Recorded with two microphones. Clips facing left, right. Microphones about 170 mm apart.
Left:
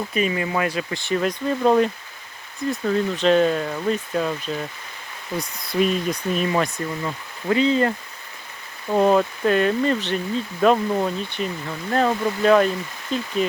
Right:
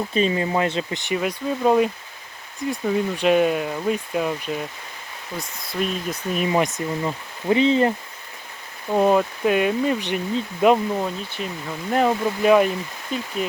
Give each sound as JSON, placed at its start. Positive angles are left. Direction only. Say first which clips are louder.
{"t": 0.1, "sound": "speech", "louder": "right 2 dB", "side_deg": -30}
{"t": 1.2, "sound": "speech", "louder": "left 1 dB", "side_deg": -5}
{"t": 5.4, "sound": "speech", "louder": "left 5 dB", "side_deg": 0}
{"t": 6.5, "sound": "speech", "louder": "right 1 dB", "side_deg": -20}
{"t": 8.9, "sound": "speech", "louder": "left 1 dB", "side_deg": -5}
{"t": 10.9, "sound": "speech", "louder": "left 3 dB", "side_deg": 0}
{"t": 11.9, "sound": "speech", "louder": "right 1 dB", "side_deg": -10}